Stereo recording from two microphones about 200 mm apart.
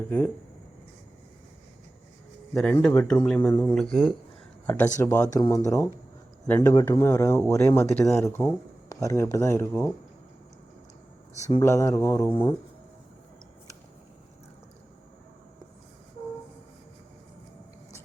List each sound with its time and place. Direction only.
2.6 s speech: 5° left (ahead or behind)
3.5 s speech: 15° left (ahead or behind)
11.3 s speech: 35° left (ahead or behind)
11.6 s speech: 15° left (ahead or behind)